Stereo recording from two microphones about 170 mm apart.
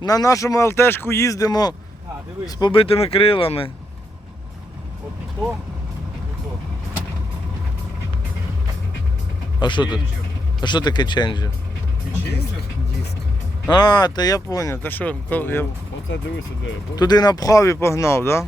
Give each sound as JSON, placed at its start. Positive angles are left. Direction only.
{"t": 0.0, "sound": "speech", "side_deg": 20}
{"t": 9.6, "sound": "speech", "side_deg": 25}
{"t": 13.7, "sound": "speech", "side_deg": 25}
{"t": 16.9, "sound": "speech", "side_deg": 25}